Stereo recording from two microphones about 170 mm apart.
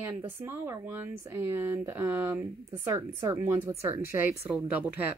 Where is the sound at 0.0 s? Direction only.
15° right (ahead or behind).